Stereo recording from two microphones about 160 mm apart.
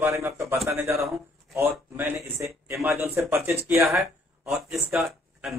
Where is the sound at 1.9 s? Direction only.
15° right (ahead or behind).